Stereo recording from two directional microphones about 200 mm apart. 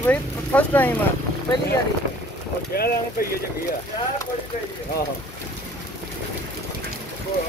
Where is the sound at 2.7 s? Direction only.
50° left (ahead or behind).